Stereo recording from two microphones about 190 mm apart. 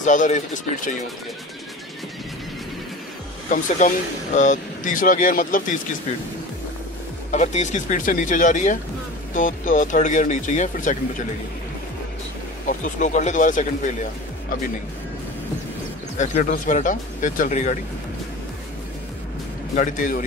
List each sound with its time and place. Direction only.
0.0 s speech: 40° left (ahead or behind)
3.4 s speech: 45° left (ahead or behind)
7.2 s speech: 40° left (ahead or behind)
12.6 s speech: 40° left (ahead or behind)
16.2 s speech: 40° left (ahead or behind)
19.7 s speech: 45° left (ahead or behind)